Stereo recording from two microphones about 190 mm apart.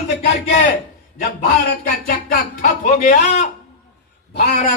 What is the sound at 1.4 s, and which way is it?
A man's voice, 55° left (ahead or behind).